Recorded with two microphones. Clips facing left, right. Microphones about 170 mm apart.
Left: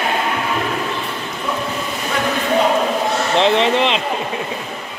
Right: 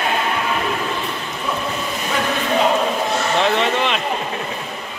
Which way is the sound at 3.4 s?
30° left (ahead or behind).